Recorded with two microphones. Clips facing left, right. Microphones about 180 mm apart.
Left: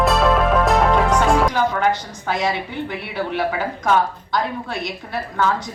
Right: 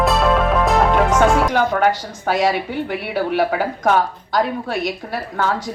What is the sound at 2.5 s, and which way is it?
Speech, 50° right (ahead or behind).